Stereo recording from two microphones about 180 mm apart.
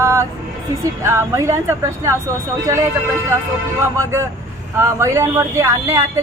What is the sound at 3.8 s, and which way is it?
Speech, 15° right (ahead or behind).